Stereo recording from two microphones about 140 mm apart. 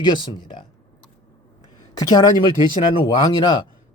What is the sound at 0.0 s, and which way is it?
Speech, 35° left (ahead or behind).